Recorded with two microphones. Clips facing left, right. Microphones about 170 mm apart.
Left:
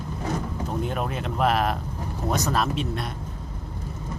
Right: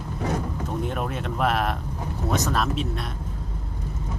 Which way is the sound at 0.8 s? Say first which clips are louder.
Even; centre (ahead or behind).